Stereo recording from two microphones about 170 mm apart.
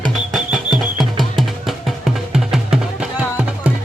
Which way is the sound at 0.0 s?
Centre (ahead or behind).